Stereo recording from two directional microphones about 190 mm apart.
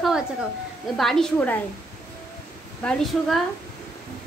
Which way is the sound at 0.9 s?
Centre (ahead or behind).